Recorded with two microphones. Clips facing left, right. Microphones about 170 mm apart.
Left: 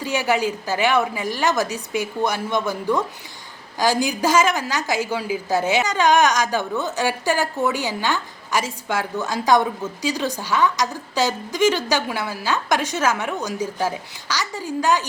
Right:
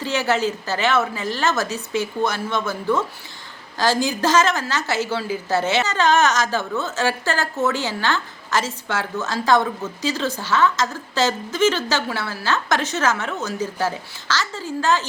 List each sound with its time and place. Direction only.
0.0 s a woman's voice: 10° left (ahead or behind)